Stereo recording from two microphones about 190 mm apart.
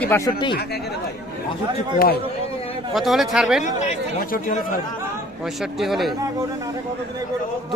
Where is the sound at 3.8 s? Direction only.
45° left (ahead or behind).